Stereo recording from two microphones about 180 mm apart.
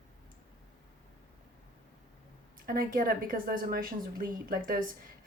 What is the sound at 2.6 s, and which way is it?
Speech, 50° right (ahead or behind).